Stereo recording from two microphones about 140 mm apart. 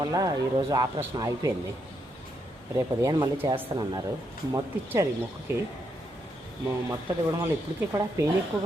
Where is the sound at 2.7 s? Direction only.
25° right (ahead or behind).